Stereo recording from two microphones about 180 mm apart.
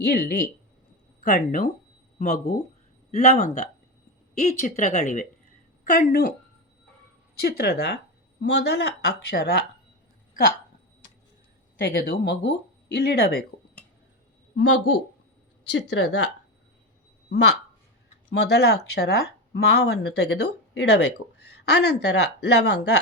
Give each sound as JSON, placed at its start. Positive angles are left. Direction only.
{"t": 0.0, "sound": "speech", "side_deg": 60}
{"t": 1.2, "sound": "a woman's voice", "side_deg": 45}
{"t": 7.4, "sound": "speech", "side_deg": 60}
{"t": 11.8, "sound": "speech", "side_deg": 55}
{"t": 12.1, "sound": "speech", "side_deg": 85}
{"t": 13.0, "sound": "speech", "side_deg": 60}
{"t": 14.5, "sound": "a woman's voice", "side_deg": 85}
{"t": 17.2, "sound": "speech", "side_deg": 65}